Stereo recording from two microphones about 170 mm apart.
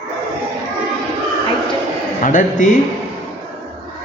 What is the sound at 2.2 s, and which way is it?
Speech, 50° left (ahead or behind).